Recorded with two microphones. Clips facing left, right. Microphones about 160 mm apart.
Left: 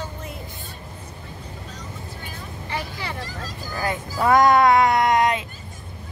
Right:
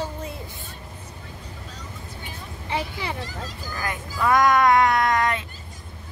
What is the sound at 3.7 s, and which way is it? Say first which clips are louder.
Speech: left 5 dB; 30° left (ahead or behind).